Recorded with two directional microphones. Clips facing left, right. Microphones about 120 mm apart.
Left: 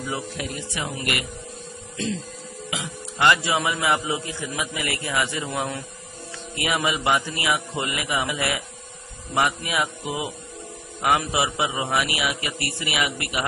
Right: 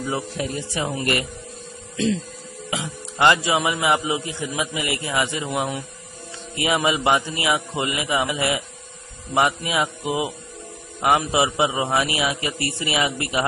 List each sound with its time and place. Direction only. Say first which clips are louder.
0.4 s speech: right 4 dB; 35° right (ahead or behind)
2.0 s speech: right 6 dB; 90° right
2.8 s a man's voice: right 3 dB; 25° right (ahead or behind)